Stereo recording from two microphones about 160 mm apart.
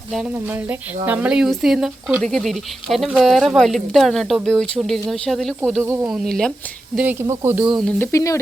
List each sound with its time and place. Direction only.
0.1 s speech: 5° right (ahead or behind)
5.8 s speech: 15° right (ahead or behind)
6.1 s speech: centre (ahead or behind)
6.9 s speech: 10° right (ahead or behind)
7.7 s speech: centre (ahead or behind)
7.9 s speech: 15° left (ahead or behind)